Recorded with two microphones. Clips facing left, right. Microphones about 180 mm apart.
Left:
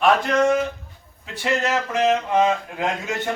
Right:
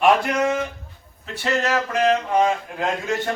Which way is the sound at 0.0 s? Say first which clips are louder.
Even; 10° right (ahead or behind).